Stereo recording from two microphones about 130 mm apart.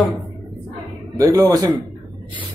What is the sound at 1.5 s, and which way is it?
Speech, 35° right (ahead or behind).